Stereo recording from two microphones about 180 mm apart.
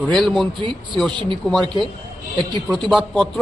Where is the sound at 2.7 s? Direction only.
Centre (ahead or behind).